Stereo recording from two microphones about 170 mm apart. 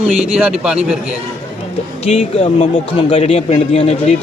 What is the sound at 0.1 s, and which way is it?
Speech, 40° right (ahead or behind).